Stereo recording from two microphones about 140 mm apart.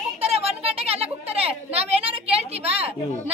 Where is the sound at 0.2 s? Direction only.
45° right (ahead or behind).